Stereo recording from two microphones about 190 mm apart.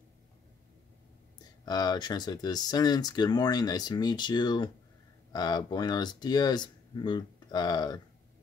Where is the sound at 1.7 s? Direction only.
20° left (ahead or behind).